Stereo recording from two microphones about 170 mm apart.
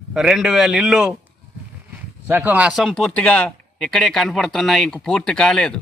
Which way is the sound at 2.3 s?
10° right (ahead or behind).